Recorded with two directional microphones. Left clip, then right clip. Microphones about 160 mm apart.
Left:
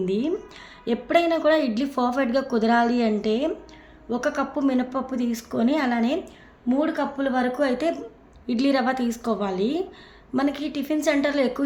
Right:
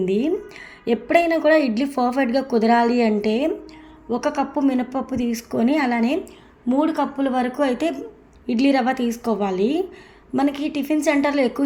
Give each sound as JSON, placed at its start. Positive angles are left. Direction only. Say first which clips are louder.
{"t": 0.0, "sound": "a woman's voice", "louder": "right 4 dB", "side_deg": -15}